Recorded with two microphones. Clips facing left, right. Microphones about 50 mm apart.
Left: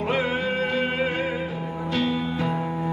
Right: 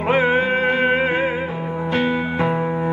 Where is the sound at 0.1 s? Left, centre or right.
Right.